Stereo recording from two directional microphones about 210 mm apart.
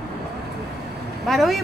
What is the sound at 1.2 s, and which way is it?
Speech, centre (ahead or behind).